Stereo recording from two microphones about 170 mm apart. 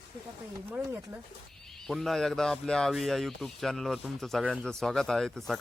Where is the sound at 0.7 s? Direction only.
10° right (ahead or behind).